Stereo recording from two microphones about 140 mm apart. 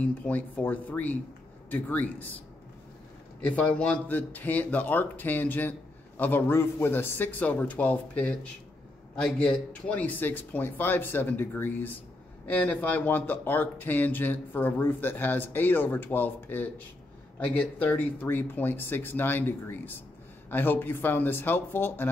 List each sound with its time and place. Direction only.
0.0 s speech: 10° left (ahead or behind)
3.4 s speech: 10° left (ahead or behind)